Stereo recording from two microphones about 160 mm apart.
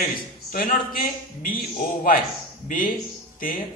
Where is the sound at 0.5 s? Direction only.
65° left (ahead or behind).